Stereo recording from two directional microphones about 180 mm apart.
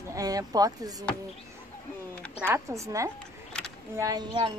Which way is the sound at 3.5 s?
5° left (ahead or behind).